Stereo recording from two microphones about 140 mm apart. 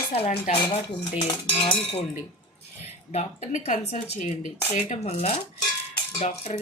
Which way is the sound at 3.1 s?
50° left (ahead or behind).